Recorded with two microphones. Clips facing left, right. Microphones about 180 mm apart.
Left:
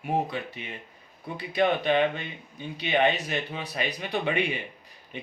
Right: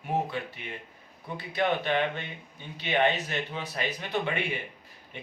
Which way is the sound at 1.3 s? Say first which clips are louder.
Left 3 dB; 15° left (ahead or behind).